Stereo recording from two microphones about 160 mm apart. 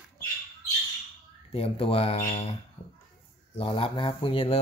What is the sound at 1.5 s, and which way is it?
Speech, 35° left (ahead or behind).